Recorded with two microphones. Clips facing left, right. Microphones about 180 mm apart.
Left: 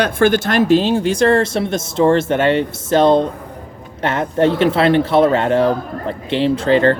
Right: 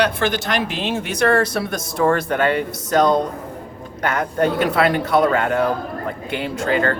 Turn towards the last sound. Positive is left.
turn(degrees=30)  # may be behind; listen again after turning